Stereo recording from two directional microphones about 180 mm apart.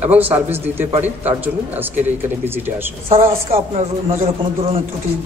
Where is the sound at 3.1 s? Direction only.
30° right (ahead or behind).